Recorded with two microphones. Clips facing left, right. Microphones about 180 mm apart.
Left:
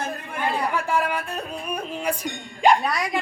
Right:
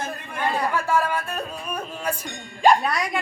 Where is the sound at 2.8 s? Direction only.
Centre (ahead or behind).